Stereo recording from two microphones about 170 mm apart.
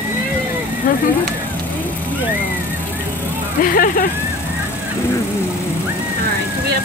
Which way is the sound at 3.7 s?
55° left (ahead or behind).